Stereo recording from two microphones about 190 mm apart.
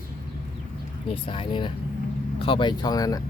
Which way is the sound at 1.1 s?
25° left (ahead or behind).